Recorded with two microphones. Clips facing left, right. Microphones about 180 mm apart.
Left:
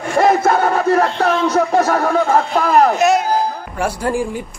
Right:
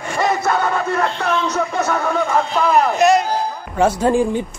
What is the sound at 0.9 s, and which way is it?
Speech, 50° left (ahead or behind).